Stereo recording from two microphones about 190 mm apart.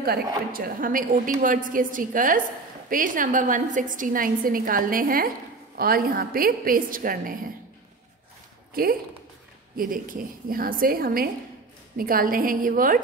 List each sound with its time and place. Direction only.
0.5 s a woman's voice: 50° right (ahead or behind)
9.8 s a woman's voice: 45° right (ahead or behind)